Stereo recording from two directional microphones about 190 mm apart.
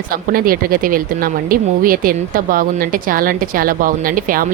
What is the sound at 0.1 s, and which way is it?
Speech, 50° right (ahead or behind).